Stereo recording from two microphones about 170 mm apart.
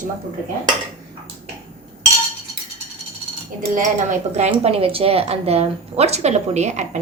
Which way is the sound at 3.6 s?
50° right (ahead or behind).